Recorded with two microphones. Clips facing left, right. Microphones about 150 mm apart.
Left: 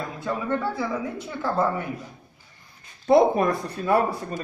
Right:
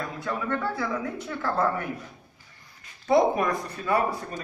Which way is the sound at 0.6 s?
10° left (ahead or behind).